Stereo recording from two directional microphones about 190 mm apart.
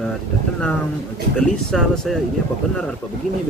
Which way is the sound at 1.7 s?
Centre (ahead or behind).